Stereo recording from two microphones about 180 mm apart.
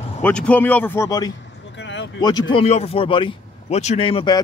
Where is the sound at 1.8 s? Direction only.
85° left.